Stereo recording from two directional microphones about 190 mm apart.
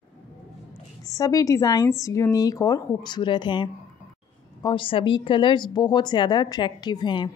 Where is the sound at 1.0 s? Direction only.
15° left (ahead or behind).